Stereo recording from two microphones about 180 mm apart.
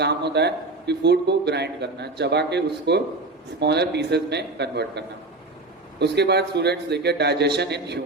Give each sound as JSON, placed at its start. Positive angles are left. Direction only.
{"t": 0.0, "sound": "a man's voice", "side_deg": -70}